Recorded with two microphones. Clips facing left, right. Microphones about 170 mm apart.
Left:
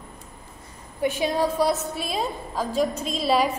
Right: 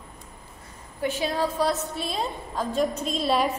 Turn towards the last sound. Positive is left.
turn(degrees=0)  # may be behind; listen again after turning